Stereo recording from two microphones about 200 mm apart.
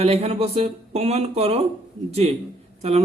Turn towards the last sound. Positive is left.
turn(degrees=-30)  # may be behind; listen again after turning